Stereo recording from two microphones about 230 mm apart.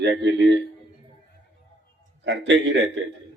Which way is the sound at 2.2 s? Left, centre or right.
Right.